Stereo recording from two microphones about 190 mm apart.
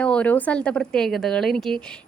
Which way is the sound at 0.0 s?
5° left (ahead or behind).